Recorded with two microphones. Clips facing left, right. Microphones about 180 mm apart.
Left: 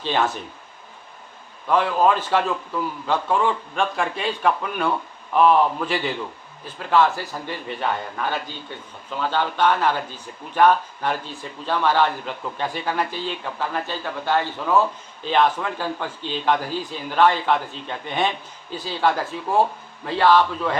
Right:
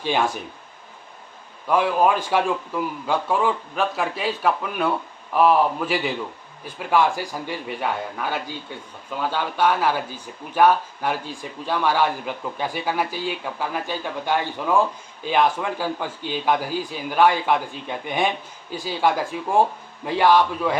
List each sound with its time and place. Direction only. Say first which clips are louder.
0.0 s a man's voice: even; 10° right (ahead or behind)
1.7 s a man's voice: even; 10° right (ahead or behind)